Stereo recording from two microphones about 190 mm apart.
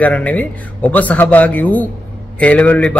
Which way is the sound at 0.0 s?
5° left (ahead or behind).